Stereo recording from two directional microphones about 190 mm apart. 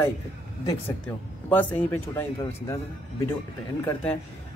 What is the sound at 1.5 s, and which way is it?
A man's voice, 10° left (ahead or behind).